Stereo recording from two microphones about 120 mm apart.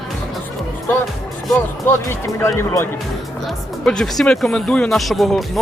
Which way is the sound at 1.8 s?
20° left (ahead or behind).